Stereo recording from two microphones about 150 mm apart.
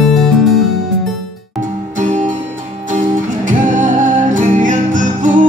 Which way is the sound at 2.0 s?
55° right (ahead or behind).